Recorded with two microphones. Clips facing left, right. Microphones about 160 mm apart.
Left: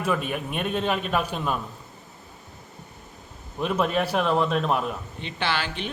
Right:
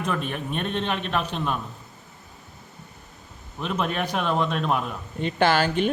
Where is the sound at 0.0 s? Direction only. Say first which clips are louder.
Left 2 dB; 5° left (ahead or behind).